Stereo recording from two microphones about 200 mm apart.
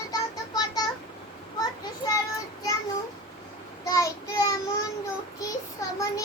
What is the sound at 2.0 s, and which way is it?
Child singing, 25° left (ahead or behind).